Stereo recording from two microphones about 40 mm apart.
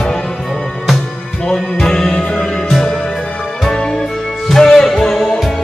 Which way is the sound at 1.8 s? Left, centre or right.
Centre.